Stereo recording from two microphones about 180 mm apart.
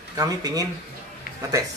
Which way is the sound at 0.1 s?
20° right (ahead or behind).